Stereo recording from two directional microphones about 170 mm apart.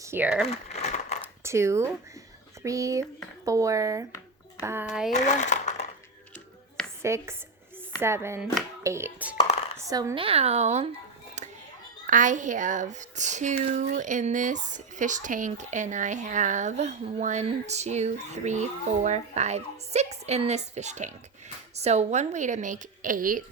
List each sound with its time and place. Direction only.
0.0 s speech: 10° right (ahead or behind)
0.4 s crumpling: 40° left (ahead or behind)
1.5 s speech: 15° right (ahead or behind)
5.1 s speech: 45° left (ahead or behind)
7.0 s speech: 15° right (ahead or behind)
10.2 s speech: 35° right (ahead or behind)
11.4 s a sound: 45° right (ahead or behind)
12.0 s speech: 50° right (ahead or behind)